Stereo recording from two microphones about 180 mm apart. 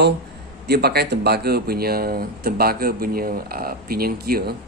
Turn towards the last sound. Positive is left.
turn(degrees=-60)  # may be behind; listen again after turning